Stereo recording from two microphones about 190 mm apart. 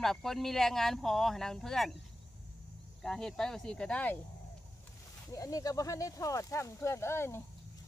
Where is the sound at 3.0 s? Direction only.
5° left (ahead or behind).